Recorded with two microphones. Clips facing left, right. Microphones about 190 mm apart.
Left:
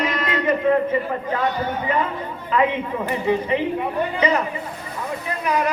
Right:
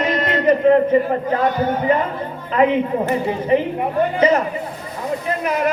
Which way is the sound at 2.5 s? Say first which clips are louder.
Right 5 dB; 45° right (ahead or behind).